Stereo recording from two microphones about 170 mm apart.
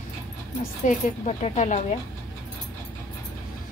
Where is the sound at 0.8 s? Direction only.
45° left (ahead or behind).